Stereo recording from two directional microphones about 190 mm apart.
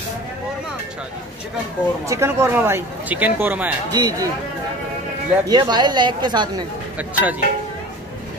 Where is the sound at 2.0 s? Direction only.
15° right (ahead or behind).